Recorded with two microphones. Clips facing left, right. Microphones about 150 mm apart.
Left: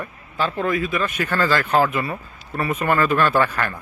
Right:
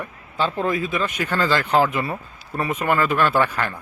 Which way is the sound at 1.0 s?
15° right (ahead or behind).